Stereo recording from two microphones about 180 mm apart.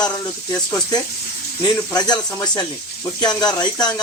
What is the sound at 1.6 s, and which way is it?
Speech, 20° left (ahead or behind).